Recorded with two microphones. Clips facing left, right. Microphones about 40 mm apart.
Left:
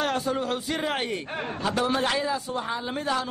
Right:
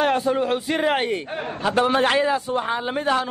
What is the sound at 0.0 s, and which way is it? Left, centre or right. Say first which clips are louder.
A man's voice: right 6 dB; right.